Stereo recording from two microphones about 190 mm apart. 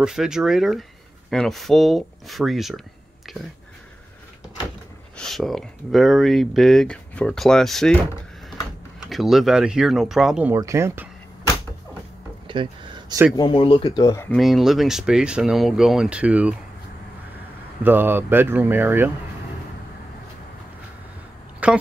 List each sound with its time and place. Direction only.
0.0 s speech: 5° right (ahead or behind)
5.1 s speech: centre (ahead or behind)
9.1 s speech: centre (ahead or behind)
10.5 s speech: 15° right (ahead or behind)
12.4 s a sound: 25° right (ahead or behind)
13.4 s speech: 25° left (ahead or behind)
14.3 s speech: centre (ahead or behind)
17.8 s speech: 10° right (ahead or behind)
21.6 s a woman's voice: 5° right (ahead or behind)